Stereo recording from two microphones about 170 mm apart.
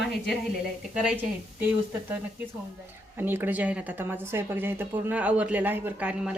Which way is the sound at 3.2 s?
10° right (ahead or behind).